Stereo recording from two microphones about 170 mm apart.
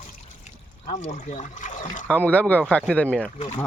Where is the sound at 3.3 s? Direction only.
40° left (ahead or behind).